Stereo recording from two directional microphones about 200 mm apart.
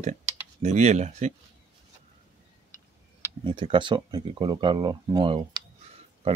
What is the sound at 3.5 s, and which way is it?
Speech, 25° right (ahead or behind).